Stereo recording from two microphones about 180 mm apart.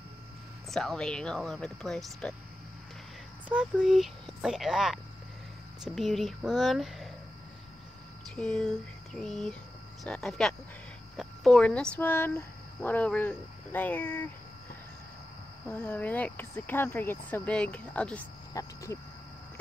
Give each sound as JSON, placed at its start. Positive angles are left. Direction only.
{"t": 0.7, "sound": "speech", "side_deg": 0}
{"t": 3.4, "sound": "speech", "side_deg": -5}
{"t": 8.4, "sound": "speech", "side_deg": 5}
{"t": 15.7, "sound": "speech", "side_deg": 10}